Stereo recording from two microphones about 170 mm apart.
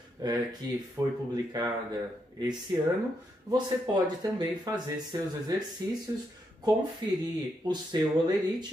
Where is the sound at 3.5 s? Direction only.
25° right (ahead or behind).